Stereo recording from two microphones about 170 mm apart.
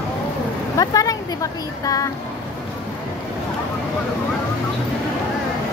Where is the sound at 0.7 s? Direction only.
20° left (ahead or behind).